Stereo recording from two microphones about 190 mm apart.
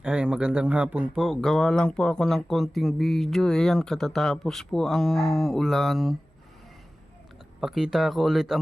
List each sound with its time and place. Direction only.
0.0 s speech: 5° right (ahead or behind)
7.6 s speech: centre (ahead or behind)